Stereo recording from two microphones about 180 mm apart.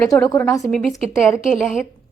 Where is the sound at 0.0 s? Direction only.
5° left (ahead or behind).